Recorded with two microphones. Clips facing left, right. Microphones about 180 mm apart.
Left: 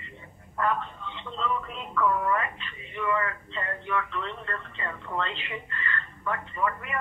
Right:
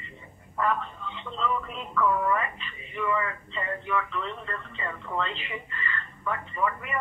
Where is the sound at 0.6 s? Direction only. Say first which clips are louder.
Even; centre (ahead or behind).